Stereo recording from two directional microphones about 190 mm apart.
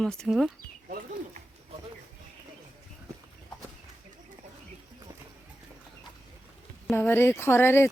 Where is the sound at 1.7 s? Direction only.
35° right (ahead or behind).